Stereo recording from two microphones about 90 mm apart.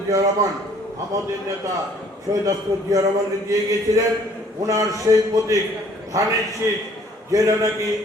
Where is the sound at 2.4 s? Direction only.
40° right (ahead or behind).